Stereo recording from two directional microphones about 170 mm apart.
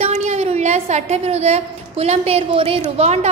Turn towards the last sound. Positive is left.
turn(degrees=-40)  # may be behind; listen again after turning